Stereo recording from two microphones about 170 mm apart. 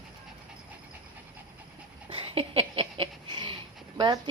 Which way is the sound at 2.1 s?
35° right (ahead or behind).